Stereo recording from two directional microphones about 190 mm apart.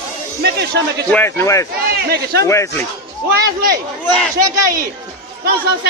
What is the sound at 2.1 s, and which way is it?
Speech, 55° right (ahead or behind).